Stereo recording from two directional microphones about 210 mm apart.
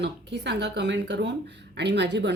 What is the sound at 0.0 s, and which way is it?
Speech, 55° right (ahead or behind).